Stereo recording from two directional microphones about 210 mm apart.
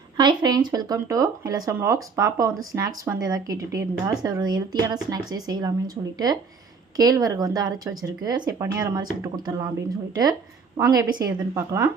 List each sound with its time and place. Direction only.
0.2 s speech: 20° right (ahead or behind)
10.8 s speech: 15° right (ahead or behind)